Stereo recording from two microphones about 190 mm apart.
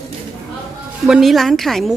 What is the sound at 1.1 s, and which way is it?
Speech, centre (ahead or behind).